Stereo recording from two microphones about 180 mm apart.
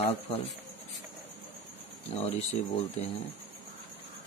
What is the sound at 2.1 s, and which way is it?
Speech, 35° left (ahead or behind).